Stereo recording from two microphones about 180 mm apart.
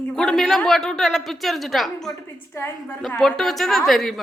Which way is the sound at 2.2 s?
15° left (ahead or behind).